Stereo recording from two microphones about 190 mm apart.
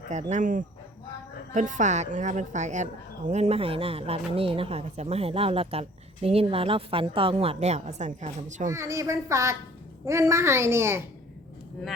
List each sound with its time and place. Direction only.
0.1 s a woman's voice: 40° right (ahead or behind)
8.7 s a child's voice: 15° right (ahead or behind)